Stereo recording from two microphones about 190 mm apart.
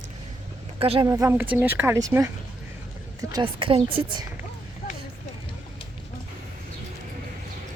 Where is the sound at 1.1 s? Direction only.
15° right (ahead or behind).